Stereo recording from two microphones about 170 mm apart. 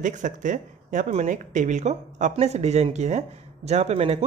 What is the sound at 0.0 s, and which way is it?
Speech, 50° right (ahead or behind).